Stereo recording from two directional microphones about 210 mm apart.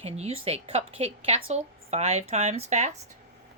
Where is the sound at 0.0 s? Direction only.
30° right (ahead or behind).